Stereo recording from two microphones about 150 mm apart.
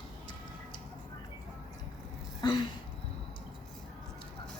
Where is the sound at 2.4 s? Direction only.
30° left (ahead or behind).